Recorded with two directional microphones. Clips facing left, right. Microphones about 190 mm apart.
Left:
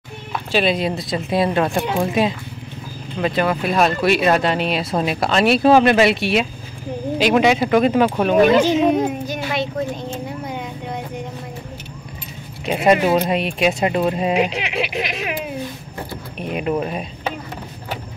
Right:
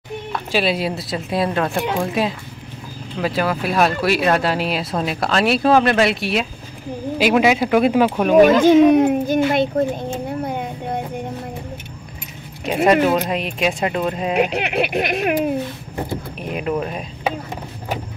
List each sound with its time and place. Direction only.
0.5 s speech: 5° right (ahead or behind)
8.9 s a sound: 50° right (ahead or behind)
12.6 s speech: centre (ahead or behind)
14.3 s speech: 55° right (ahead or behind)
16.3 s speech: centre (ahead or behind)